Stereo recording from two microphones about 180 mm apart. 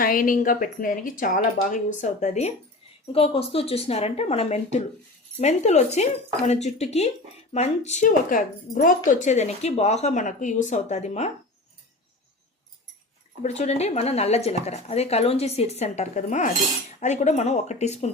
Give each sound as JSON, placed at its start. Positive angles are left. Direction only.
{"t": 0.0, "sound": "a woman's voice", "side_deg": 50}
{"t": 13.4, "sound": "speech", "side_deg": 40}